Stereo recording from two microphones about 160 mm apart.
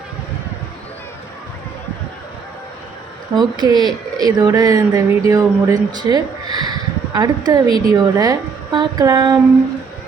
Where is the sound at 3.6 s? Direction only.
25° right (ahead or behind).